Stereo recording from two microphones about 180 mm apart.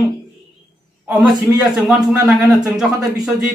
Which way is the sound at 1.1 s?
Centre (ahead or behind).